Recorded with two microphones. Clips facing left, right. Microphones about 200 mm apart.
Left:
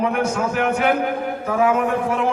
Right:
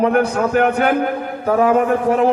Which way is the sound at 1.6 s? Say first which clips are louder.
Right 3 dB; 35° right (ahead or behind).